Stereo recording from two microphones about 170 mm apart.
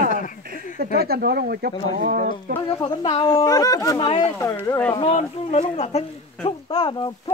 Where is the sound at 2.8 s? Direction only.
25° left (ahead or behind).